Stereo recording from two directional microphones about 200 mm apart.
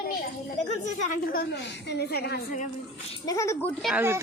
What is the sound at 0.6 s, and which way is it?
A woman's voice, 35° left (ahead or behind).